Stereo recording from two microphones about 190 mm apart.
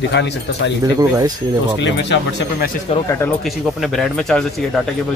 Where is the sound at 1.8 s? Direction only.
65° left (ahead or behind).